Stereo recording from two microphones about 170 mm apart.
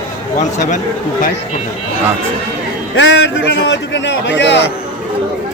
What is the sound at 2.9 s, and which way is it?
A man's voice, 90° left.